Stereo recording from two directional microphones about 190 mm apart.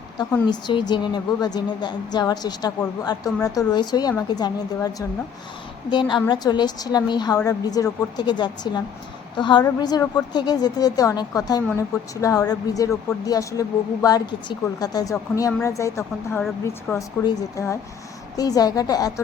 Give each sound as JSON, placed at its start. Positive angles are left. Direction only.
{"t": 0.5, "sound": "a woman's voice", "side_deg": 25}